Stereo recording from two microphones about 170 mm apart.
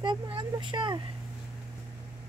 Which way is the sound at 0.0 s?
25° right (ahead or behind).